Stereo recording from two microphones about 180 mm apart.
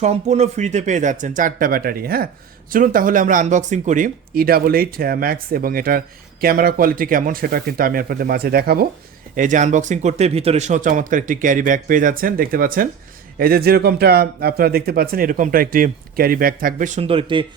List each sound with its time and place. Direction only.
0.0 s a man's voice: 40° right (ahead or behind); by 8.9 s 60° right (ahead or behind)
9.3 s a man's voice: 45° right (ahead or behind); by 17.4 s 30° right (ahead or behind)